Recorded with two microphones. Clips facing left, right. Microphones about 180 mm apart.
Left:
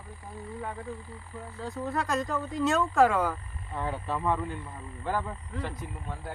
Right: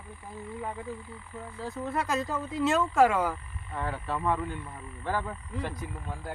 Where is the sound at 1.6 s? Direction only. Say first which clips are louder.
Even; centre (ahead or behind).